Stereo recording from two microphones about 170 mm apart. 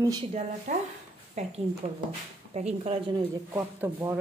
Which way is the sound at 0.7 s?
45° right (ahead or behind).